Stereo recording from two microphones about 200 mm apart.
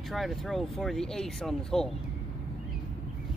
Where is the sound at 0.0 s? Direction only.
Centre (ahead or behind).